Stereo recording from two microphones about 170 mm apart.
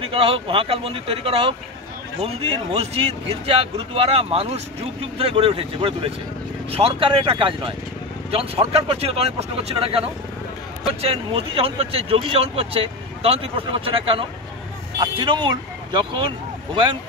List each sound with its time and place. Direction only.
0.0 s speech: 35° right (ahead or behind)